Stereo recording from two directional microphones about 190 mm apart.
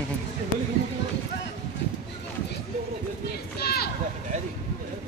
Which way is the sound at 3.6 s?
55° left (ahead or behind).